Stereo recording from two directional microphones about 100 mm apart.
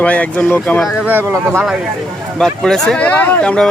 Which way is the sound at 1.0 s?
25° right (ahead or behind).